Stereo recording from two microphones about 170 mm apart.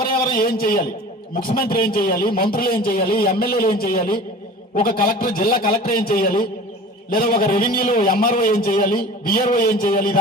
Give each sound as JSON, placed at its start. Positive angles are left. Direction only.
{"t": 0.1, "sound": "a man's voice", "side_deg": 55}